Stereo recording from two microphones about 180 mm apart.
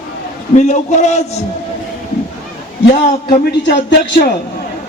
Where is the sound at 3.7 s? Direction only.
60° left (ahead or behind).